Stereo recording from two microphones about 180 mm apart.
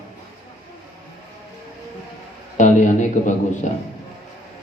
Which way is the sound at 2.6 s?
45° left (ahead or behind).